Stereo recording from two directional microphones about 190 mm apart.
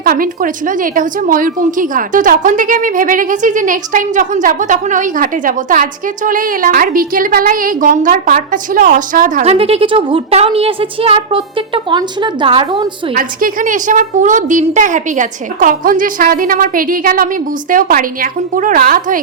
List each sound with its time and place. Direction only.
0.0 s a woman's voice: 50° right (ahead or behind)
9.4 s a woman's voice: 30° right (ahead or behind)
13.1 s a woman's voice: 45° right (ahead or behind)